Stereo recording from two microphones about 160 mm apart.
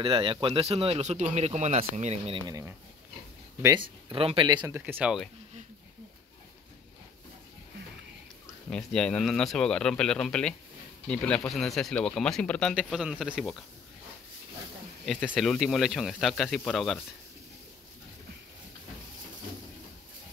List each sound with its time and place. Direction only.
0.0 s speech: 30° right (ahead or behind)
2.4 s speech: 20° right (ahead or behind)
4.6 s speech: 15° right (ahead or behind)
8.6 s speech: 5° left (ahead or behind)
15.0 s speech: 5° left (ahead or behind)